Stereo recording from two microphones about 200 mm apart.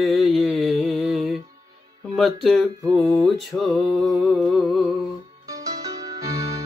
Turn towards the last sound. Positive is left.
turn(degrees=-20)  # may be behind; listen again after turning